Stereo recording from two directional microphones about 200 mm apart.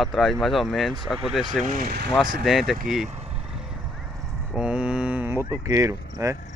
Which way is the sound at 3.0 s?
30° right (ahead or behind).